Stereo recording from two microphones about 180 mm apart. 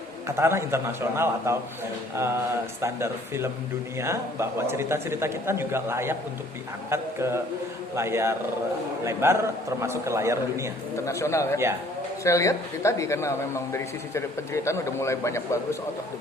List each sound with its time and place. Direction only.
0.3 s a man's voice: 15° right (ahead or behind)
10.9 s speech: 15° left (ahead or behind)